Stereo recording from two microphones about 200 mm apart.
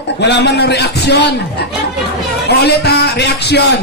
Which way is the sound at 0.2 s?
60° left (ahead or behind).